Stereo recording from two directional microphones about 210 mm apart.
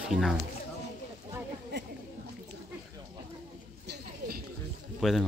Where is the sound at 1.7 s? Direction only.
50° right (ahead or behind).